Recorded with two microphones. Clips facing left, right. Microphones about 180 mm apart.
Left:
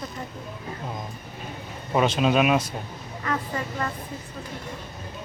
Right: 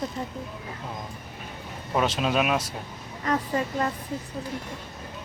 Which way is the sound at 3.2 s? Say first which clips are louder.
Right 3 dB; 30° right (ahead or behind).